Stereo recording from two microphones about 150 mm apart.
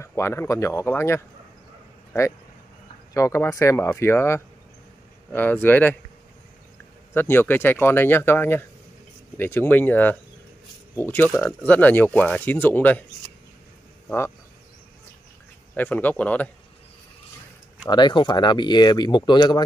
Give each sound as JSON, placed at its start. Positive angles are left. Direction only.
{"t": 0.0, "sound": "speech", "side_deg": 20}
{"t": 3.2, "sound": "speech", "side_deg": 20}
{"t": 7.2, "sound": "speech", "side_deg": 15}
{"t": 11.2, "sound": "speech", "side_deg": 0}
{"t": 14.0, "sound": "speech", "side_deg": 15}
{"t": 15.7, "sound": "speech", "side_deg": 10}
{"t": 17.8, "sound": "speech", "side_deg": 30}